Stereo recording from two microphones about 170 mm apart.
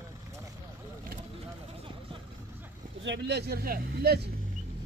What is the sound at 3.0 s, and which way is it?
Speech, 90° right.